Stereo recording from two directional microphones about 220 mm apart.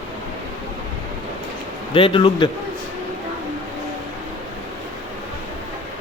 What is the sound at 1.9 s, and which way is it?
Speech, 25° left (ahead or behind).